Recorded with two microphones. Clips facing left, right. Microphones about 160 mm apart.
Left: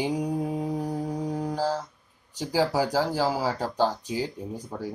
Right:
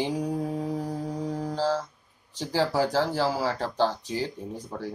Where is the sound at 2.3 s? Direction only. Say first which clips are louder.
Left 1 dB; 10° left (ahead or behind).